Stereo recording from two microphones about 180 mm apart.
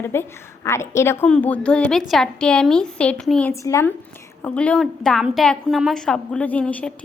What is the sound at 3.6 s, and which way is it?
Speech, 15° left (ahead or behind).